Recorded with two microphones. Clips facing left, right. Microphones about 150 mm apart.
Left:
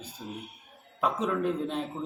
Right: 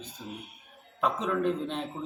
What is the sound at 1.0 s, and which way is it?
Speech, 5° left (ahead or behind).